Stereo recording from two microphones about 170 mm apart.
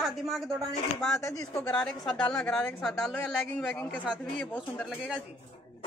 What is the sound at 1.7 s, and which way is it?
A woman's voice, 5° left (ahead or behind).